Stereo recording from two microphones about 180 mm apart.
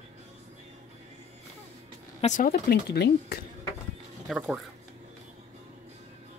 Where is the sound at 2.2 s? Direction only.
45° left (ahead or behind); by 3.4 s 65° left (ahead or behind).